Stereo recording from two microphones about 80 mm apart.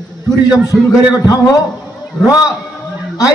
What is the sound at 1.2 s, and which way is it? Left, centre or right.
Speech, left.